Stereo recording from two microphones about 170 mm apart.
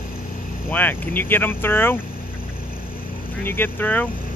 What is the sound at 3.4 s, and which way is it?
Speech, 10° left (ahead or behind).